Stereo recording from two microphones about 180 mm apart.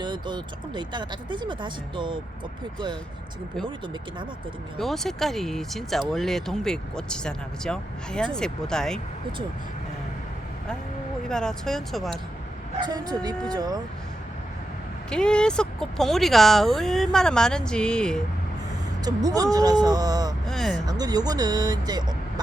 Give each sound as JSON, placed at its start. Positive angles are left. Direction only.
{"t": 0.0, "sound": "speech", "side_deg": -25}
{"t": 4.8, "sound": "speech", "side_deg": 0}
{"t": 11.3, "sound": "speech", "side_deg": 5}
{"t": 12.8, "sound": "speech", "side_deg": -20}
{"t": 15.1, "sound": "speech", "side_deg": 5}
{"t": 19.0, "sound": "speech", "side_deg": -20}
{"t": 20.5, "sound": "speech", "side_deg": 0}
{"t": 20.8, "sound": "speech", "side_deg": -20}